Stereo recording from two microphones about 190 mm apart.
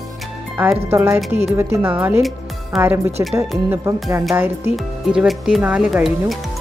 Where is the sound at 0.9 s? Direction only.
15° right (ahead or behind).